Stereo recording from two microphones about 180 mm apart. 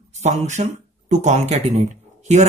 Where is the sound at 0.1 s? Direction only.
40° right (ahead or behind).